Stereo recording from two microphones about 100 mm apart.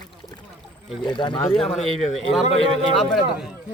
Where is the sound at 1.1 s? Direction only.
50° left (ahead or behind).